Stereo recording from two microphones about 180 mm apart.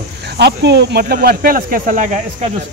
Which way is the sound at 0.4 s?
70° right (ahead or behind).